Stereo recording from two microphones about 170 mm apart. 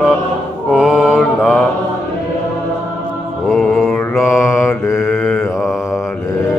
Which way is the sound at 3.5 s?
5° left (ahead or behind).